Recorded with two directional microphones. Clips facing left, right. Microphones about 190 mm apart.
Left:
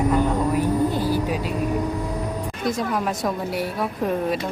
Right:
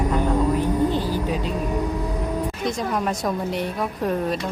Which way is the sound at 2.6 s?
Centre (ahead or behind).